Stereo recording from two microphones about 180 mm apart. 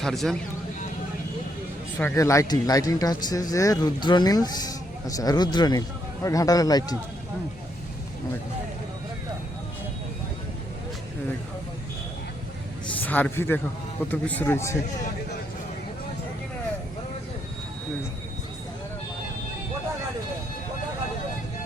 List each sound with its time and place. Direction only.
0.0 s speech: centre (ahead or behind)
2.1 s speech: 15° left (ahead or behind)
13.0 s a man's voice: 10° left (ahead or behind)